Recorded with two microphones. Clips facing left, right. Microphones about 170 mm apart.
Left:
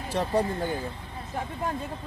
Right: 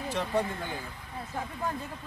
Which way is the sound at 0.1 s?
35° left (ahead or behind).